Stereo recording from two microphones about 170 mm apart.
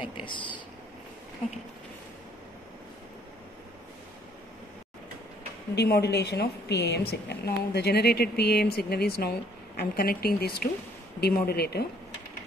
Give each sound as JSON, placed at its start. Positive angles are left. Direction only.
{"t": 0.0, "sound": "speech", "side_deg": 30}
{"t": 5.8, "sound": "a woman's voice", "side_deg": 70}